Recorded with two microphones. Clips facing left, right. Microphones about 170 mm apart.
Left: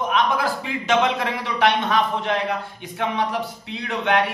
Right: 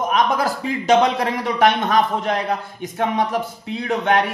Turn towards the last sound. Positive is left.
turn(degrees=-45)  # may be behind; listen again after turning